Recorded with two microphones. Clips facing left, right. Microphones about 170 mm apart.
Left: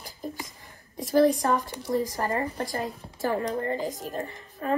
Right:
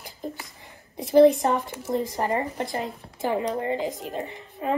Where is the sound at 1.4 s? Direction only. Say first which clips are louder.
Right 1 dB; 20° right (ahead or behind).